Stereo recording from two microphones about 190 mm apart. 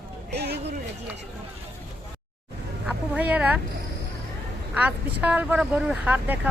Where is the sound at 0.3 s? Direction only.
60° right (ahead or behind).